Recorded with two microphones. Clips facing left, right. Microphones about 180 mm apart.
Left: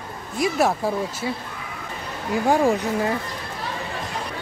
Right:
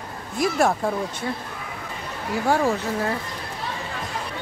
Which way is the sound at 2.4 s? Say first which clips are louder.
Left 2 dB; 15° left (ahead or behind).